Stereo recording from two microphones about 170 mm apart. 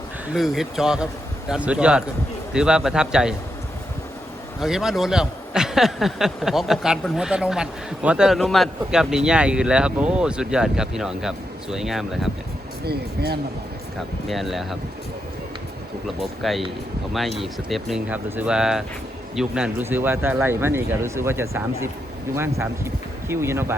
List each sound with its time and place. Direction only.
0.3 s a man's voice: centre (ahead or behind)
4.6 s a man's voice: centre (ahead or behind)
12.8 s speech: 70° right (ahead or behind)
14.3 s a man's voice: centre (ahead or behind)
16.2 s a man's voice: centre (ahead or behind)